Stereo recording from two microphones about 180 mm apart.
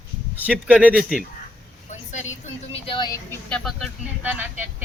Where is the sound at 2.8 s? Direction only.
25° left (ahead or behind).